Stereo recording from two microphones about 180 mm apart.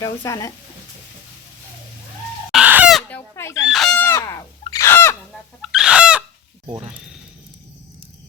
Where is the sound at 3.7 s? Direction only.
Centre (ahead or behind).